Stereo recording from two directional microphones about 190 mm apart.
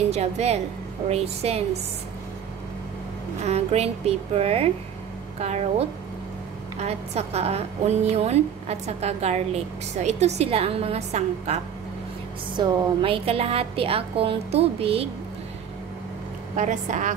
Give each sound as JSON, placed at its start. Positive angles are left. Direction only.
{"t": 0.1, "sound": "a woman's voice", "side_deg": -35}
{"t": 3.4, "sound": "a woman's voice", "side_deg": -35}
{"t": 16.5, "sound": "a woman's voice", "side_deg": -40}